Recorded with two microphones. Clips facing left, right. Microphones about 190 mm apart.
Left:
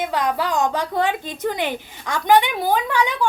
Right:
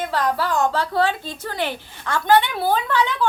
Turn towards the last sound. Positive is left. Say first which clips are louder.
# even
turn(degrees=15)  # may be behind; listen again after turning